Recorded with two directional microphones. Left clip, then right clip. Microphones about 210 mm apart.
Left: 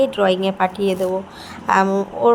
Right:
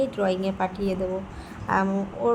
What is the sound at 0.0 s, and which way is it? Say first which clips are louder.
A woman's voice: left 8 dB; 15° left (ahead or behind).